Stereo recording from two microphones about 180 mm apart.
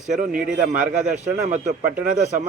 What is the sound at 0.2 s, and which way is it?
Speech, 50° right (ahead or behind).